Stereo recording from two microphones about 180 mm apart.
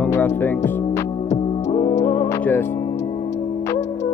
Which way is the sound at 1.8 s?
20° left (ahead or behind).